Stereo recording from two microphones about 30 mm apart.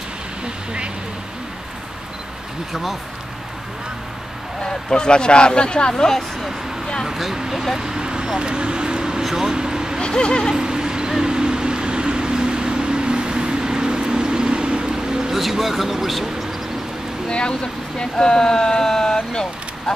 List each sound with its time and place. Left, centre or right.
2.7 s speech: centre
4.6 s speech: left
7.1 s speech: centre; by 9.2 s right
9.2 s speech: centre
9.6 s a sound: right
10.0 s speech: left
10.5 s vehicle: right
15.3 s a man's voice: centre
17.3 s speech: left